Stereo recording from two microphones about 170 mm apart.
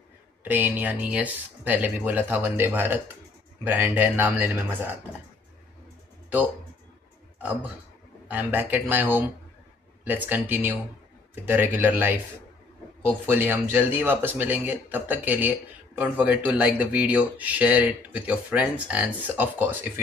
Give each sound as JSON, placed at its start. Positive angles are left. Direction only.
{"t": 0.4, "sound": "a man's voice", "side_deg": -10}
{"t": 8.3, "sound": "a man's voice", "side_deg": -10}
{"t": 13.3, "sound": "a man's voice", "side_deg": -10}